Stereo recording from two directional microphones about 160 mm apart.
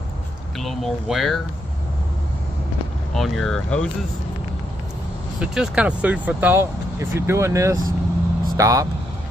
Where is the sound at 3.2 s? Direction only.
Centre (ahead or behind).